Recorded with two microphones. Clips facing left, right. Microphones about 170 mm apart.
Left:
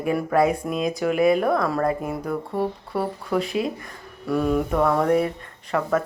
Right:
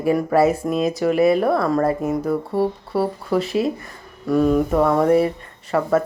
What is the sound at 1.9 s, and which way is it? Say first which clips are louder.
Speech: right 4 dB; 40° right (ahead or behind).